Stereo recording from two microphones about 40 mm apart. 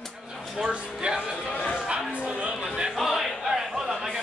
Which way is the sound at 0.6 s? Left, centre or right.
Right.